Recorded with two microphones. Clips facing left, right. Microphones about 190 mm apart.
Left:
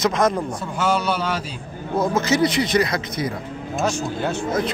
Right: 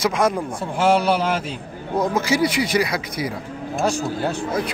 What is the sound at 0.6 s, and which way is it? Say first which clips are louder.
Speech: right 6 dB; 30° right (ahead or behind).